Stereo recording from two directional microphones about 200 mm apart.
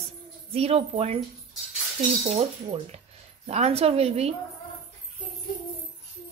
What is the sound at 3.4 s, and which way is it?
Speech, 30° right (ahead or behind).